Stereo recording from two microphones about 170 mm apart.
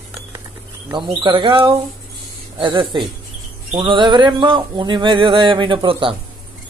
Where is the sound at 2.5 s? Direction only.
30° right (ahead or behind).